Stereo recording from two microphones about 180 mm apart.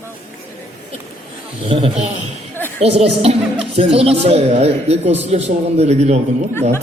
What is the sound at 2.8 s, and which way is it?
Speech, 35° right (ahead or behind).